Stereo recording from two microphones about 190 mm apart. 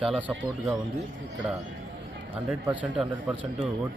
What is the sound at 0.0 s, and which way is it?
Speech, 5° right (ahead or behind).